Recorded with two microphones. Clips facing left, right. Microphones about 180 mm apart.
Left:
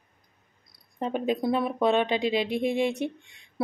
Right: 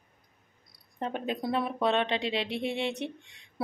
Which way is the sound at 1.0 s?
5° left (ahead or behind).